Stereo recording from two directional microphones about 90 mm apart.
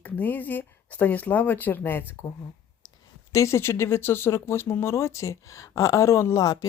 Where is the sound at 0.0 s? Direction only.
20° left (ahead or behind).